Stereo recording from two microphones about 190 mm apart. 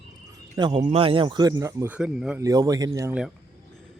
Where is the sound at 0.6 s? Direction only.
25° right (ahead or behind); by 2.4 s 5° right (ahead or behind).